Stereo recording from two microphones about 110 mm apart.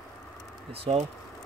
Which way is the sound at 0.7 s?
65° right (ahead or behind).